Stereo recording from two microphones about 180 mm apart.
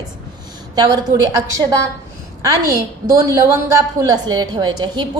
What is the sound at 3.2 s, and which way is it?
A woman's voice, 20° right (ahead or behind).